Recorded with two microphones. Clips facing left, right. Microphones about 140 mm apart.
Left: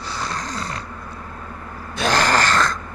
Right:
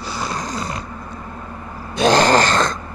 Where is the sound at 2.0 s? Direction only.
20° right (ahead or behind).